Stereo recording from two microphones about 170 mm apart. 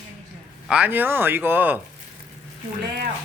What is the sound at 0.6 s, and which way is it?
Speech, 5° right (ahead or behind).